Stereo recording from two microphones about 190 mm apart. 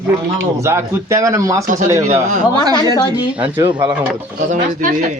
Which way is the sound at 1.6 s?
40° right (ahead or behind).